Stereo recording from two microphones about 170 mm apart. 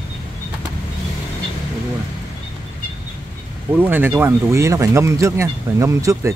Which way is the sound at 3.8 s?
10° right (ahead or behind).